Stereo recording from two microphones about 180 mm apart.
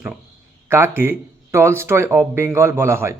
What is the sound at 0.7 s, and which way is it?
Speech, 15° right (ahead or behind).